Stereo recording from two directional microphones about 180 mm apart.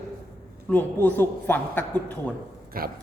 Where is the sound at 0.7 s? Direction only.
10° left (ahead or behind).